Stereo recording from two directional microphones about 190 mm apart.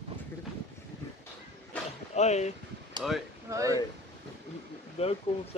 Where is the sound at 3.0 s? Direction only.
Centre (ahead or behind).